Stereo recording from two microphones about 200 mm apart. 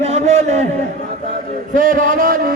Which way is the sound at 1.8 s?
40° right (ahead or behind).